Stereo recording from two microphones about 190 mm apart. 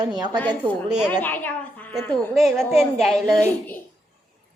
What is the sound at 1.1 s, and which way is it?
A child's voice, 10° left (ahead or behind).